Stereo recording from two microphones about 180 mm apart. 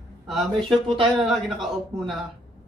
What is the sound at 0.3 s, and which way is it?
Speech, centre (ahead or behind).